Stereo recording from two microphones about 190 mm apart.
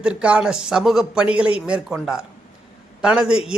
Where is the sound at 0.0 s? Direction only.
5° right (ahead or behind).